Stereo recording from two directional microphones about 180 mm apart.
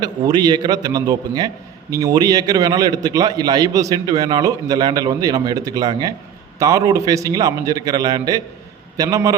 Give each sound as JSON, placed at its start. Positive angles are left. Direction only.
{"t": 0.0, "sound": "a man's voice", "side_deg": -25}